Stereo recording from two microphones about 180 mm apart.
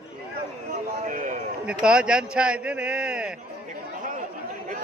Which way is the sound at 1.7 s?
5° right (ahead or behind).